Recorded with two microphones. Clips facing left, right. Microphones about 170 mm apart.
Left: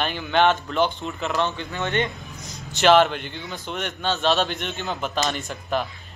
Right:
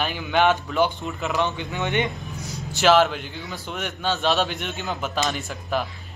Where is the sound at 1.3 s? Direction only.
15° right (ahead or behind).